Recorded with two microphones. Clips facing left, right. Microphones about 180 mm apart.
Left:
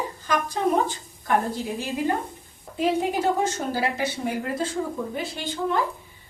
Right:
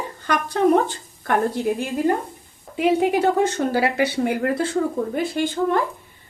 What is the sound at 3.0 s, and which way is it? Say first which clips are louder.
Speech: right 5 dB; 65° right (ahead or behind).